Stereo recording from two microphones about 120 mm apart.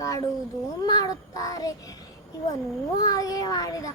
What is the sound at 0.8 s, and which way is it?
Child singing, 30° left (ahead or behind).